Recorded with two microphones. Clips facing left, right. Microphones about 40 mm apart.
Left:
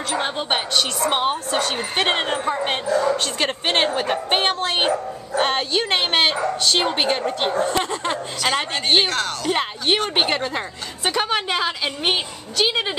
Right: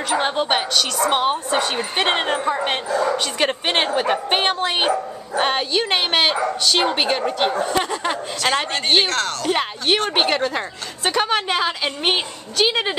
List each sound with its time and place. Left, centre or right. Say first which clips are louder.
0.1 s speech: right 4 dB; centre
1.5 s speech: right 2 dB; centre